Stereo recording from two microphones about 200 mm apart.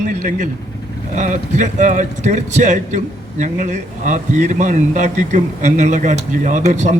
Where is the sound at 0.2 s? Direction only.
40° right (ahead or behind).